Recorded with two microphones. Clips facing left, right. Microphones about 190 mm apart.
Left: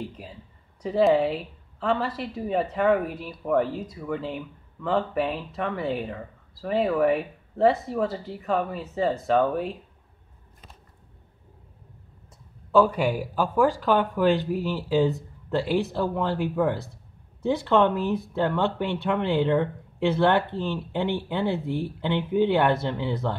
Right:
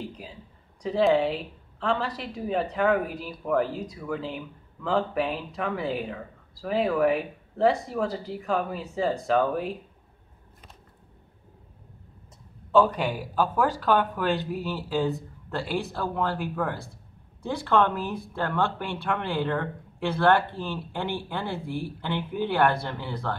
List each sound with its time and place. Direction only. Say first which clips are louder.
0.8 s speech: left 2 dB; 5° left (ahead or behind)
12.7 s speech: left 2 dB; 10° left (ahead or behind)
20.5 s speech: left 4 dB; 10° right (ahead or behind)
21.3 s speech: left 5 dB; 20° left (ahead or behind)